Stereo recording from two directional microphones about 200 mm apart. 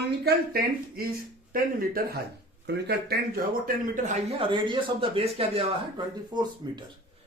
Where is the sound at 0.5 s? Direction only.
45° right (ahead or behind).